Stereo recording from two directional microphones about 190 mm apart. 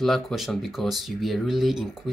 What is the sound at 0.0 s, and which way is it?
Speech, centre (ahead or behind).